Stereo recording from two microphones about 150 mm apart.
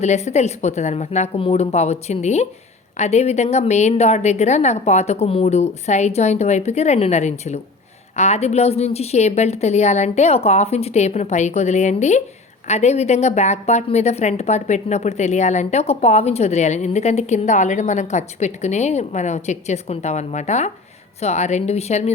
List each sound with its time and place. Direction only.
0.0 s a woman's voice: 50° left (ahead or behind)